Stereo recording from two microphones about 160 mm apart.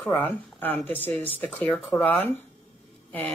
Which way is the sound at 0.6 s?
10° left (ahead or behind).